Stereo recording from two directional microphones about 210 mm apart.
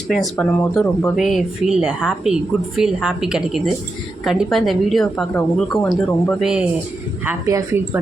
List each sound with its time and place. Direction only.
0.1 s speech: centre (ahead or behind)
7.3 s a woman's voice: 15° right (ahead or behind)